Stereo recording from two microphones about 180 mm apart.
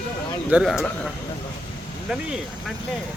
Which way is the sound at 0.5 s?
Centre (ahead or behind).